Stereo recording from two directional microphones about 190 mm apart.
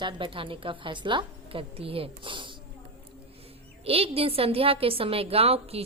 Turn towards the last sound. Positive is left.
turn(degrees=-30)  # may be behind; listen again after turning